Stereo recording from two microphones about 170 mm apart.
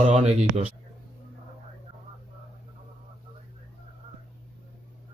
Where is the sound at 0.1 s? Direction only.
40° right (ahead or behind).